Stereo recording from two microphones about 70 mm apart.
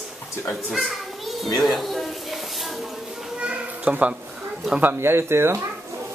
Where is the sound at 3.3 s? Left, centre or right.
Centre.